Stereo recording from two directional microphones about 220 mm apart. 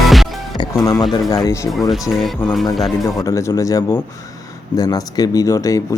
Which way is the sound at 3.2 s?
15° left (ahead or behind).